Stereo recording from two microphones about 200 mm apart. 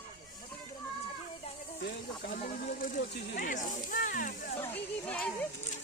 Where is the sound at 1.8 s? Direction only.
45° left (ahead or behind).